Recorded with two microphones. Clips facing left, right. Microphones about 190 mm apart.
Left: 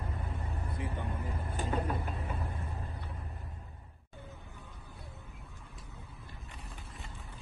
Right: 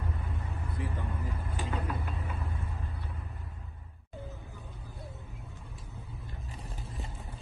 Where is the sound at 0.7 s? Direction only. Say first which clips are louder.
Right 2 dB; 20° left (ahead or behind).